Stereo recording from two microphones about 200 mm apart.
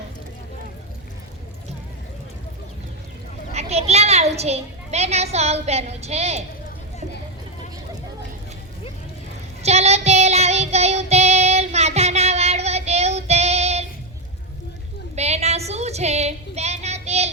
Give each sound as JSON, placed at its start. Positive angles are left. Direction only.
{"t": 3.5, "sound": "a child's voice", "side_deg": -30}
{"t": 9.6, "sound": "child singing", "side_deg": -30}
{"t": 15.1, "sound": "a sound", "side_deg": -35}